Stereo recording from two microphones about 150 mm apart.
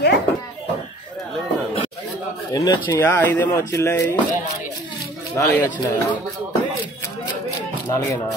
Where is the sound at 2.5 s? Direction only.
25° left (ahead or behind).